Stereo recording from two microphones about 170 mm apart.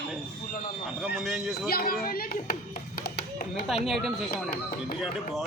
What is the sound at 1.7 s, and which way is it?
Speech, 60° left (ahead or behind).